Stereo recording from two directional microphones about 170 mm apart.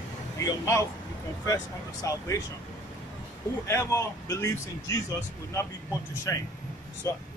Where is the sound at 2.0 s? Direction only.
20° left (ahead or behind).